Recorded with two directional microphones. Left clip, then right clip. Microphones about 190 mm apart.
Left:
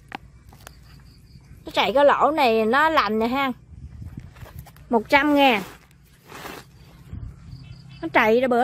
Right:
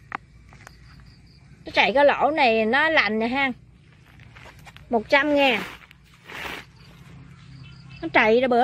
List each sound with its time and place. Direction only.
1.6 s a woman's voice: 5° left (ahead or behind)
4.8 s speech: 20° left (ahead or behind)
8.0 s a woman's voice: 5° left (ahead or behind)